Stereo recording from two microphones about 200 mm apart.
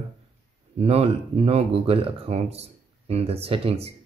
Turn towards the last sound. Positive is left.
turn(degrees=-30)  # may be behind; listen again after turning